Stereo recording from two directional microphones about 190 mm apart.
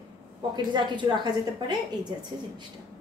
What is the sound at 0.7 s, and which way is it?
A woman's voice, 25° right (ahead or behind).